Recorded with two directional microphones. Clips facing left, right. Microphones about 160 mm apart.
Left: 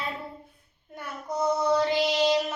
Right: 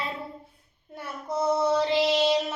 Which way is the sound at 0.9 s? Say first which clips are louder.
Right 1 dB; 30° right (ahead or behind).